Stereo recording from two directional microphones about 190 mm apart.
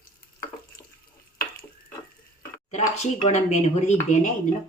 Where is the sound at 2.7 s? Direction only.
35° left (ahead or behind).